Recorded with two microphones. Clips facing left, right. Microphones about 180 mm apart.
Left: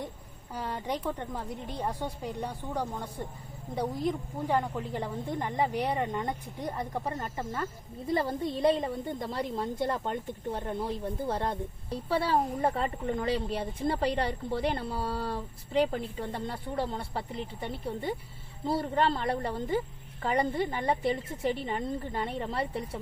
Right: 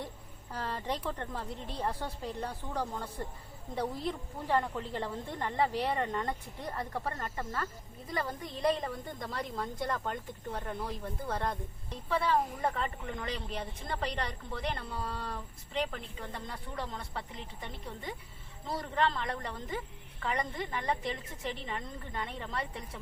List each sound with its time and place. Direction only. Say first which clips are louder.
0.5 s a woman's voice: left 2 dB; 10° left (ahead or behind); by 23.0 s 30° left (ahead or behind)